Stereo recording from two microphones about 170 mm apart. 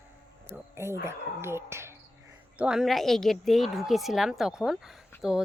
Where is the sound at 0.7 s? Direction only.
15° right (ahead or behind).